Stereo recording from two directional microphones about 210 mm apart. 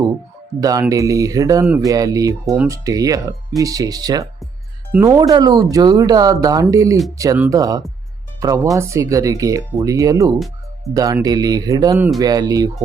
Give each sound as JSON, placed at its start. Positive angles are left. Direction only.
{"t": 0.6, "sound": "speech", "side_deg": -15}